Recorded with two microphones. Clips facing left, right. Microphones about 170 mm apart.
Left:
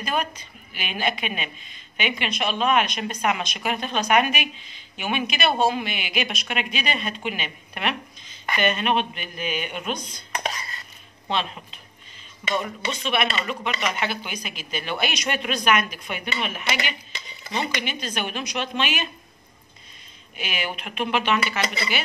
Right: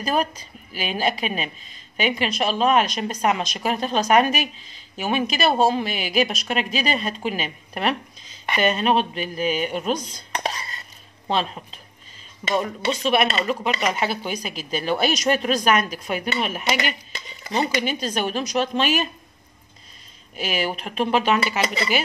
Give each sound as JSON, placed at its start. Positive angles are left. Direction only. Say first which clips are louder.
{"t": 0.0, "sound": "a woman's voice", "louder": "right 4 dB", "side_deg": -35}
{"t": 11.2, "sound": "a woman's voice", "louder": "right 3 dB", "side_deg": -35}
{"t": 20.3, "sound": "a woman's voice", "louder": "right 5 dB", "side_deg": -35}